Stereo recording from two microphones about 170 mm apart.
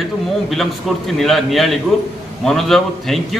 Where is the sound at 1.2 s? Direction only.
Centre (ahead or behind).